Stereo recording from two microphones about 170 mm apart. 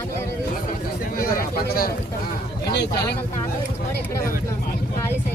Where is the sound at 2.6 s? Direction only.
80° left.